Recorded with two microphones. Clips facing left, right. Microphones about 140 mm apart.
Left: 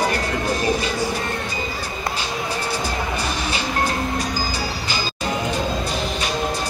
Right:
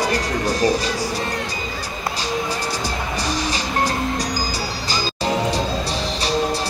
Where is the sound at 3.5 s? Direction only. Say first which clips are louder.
Right 1 dB; 35° right (ahead or behind).